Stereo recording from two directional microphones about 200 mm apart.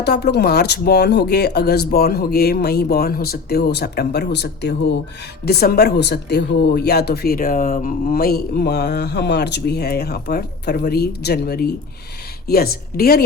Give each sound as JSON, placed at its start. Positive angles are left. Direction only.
{"t": 0.0, "sound": "speech", "side_deg": 55}